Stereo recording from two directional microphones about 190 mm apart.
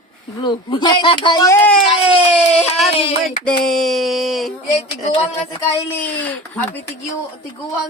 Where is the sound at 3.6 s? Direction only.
Centre (ahead or behind).